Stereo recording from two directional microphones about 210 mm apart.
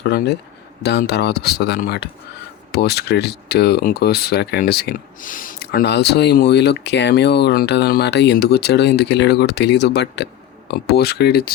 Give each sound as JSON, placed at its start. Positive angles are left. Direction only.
{"t": 0.1, "sound": "speech", "side_deg": 45}